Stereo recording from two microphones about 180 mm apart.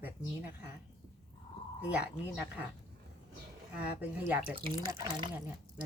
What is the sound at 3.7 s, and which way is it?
Speech, 10° right (ahead or behind).